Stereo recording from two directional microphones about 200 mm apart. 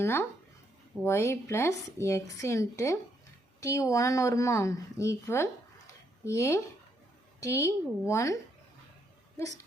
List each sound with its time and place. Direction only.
0.0 s speech: 10° left (ahead or behind)